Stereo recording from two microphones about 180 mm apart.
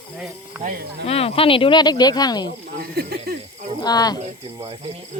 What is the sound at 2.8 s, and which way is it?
Speech, 60° right (ahead or behind).